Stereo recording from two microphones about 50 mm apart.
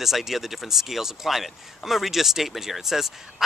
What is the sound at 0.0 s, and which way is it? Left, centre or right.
Speech, centre.